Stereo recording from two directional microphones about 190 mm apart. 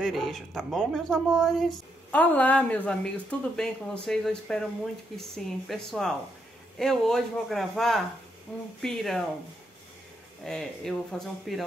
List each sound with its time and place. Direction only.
0.0 s speech: centre (ahead or behind)
10.4 s speech: centre (ahead or behind)